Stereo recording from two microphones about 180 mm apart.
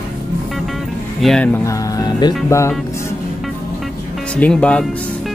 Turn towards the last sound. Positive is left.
turn(degrees=5)  # may be behind; listen again after turning